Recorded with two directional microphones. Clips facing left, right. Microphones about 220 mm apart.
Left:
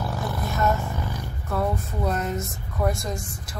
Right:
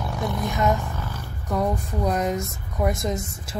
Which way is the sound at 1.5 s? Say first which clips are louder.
Right 2 dB; 15° right (ahead or behind).